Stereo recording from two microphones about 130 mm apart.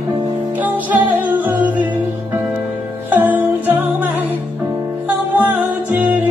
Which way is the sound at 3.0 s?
15° right (ahead or behind).